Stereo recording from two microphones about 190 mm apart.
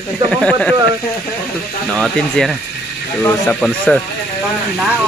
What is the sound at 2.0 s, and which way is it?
Speech, centre (ahead or behind).